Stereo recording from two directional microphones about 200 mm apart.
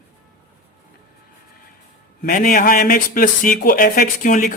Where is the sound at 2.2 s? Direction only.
45° left (ahead or behind).